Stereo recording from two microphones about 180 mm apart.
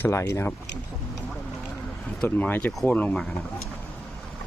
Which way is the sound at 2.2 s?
10° left (ahead or behind).